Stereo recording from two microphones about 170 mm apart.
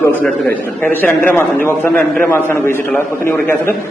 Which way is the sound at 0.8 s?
10° left (ahead or behind).